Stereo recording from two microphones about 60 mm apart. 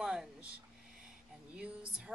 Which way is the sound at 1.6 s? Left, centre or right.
Centre.